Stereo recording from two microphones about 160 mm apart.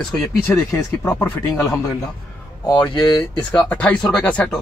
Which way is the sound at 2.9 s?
30° left (ahead or behind).